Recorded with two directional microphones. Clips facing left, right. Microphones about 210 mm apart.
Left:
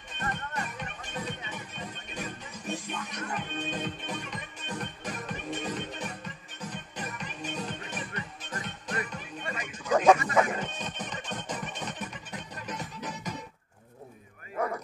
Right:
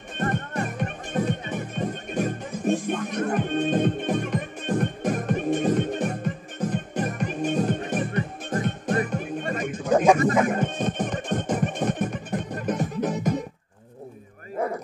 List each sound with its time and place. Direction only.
0.2 s music: 50° right (ahead or behind)